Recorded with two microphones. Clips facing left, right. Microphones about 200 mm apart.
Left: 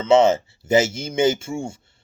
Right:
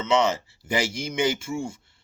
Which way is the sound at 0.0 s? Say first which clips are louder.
Left 7 dB; 25° left (ahead or behind).